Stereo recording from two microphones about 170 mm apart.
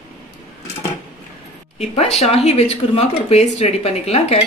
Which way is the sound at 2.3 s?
35° left (ahead or behind).